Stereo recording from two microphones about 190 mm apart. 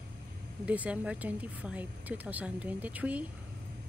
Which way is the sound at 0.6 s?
5° right (ahead or behind).